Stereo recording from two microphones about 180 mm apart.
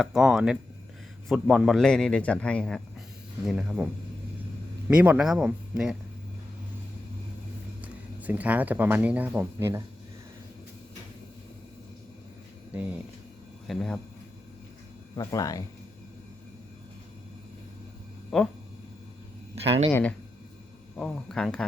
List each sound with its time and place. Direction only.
0.0 s a man's voice: 5° right (ahead or behind)
4.9 s a man's voice: 5° right (ahead or behind)
7.8 s speech: 10° right (ahead or behind)
12.7 s speech: 5° right (ahead or behind)
13.7 s a man's voice: 5° left (ahead or behind)
15.1 s speech: 20° left (ahead or behind)
18.3 s a man's voice: 5° left (ahead or behind)
19.5 s speech: 35° right (ahead or behind)
19.9 s a man's voice: 10° left (ahead or behind)